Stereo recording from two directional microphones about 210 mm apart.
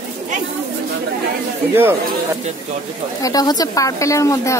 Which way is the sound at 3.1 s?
15° left (ahead or behind).